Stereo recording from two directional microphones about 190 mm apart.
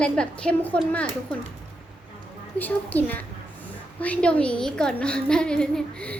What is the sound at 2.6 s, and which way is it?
A child's voice, 10° left (ahead or behind).